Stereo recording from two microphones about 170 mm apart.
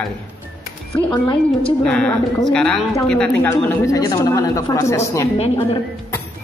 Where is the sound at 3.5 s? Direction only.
20° left (ahead or behind).